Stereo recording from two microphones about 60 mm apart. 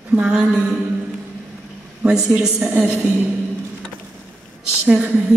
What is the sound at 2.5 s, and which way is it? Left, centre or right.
Speech, centre.